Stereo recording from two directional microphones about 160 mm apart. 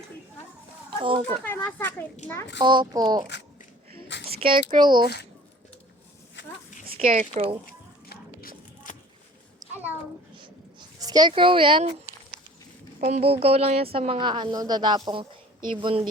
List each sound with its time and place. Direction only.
0.9 s a child's voice: 35° right (ahead or behind)
1.5 s speech: 10° left (ahead or behind)
2.6 s a child's voice: 25° right (ahead or behind)
4.3 s speech: 35° right (ahead or behind)
6.9 s a woman's voice: 40° right (ahead or behind)
7.7 s a sound: 65° left (ahead or behind)
10.4 s a sound: 25° right (ahead or behind)
13.0 s a woman's voice: 40° right (ahead or behind)